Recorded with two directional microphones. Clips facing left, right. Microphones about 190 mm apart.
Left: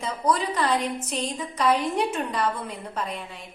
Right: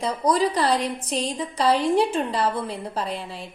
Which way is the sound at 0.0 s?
35° right (ahead or behind).